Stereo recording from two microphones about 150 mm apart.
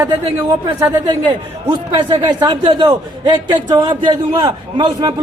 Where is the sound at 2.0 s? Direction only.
30° right (ahead or behind).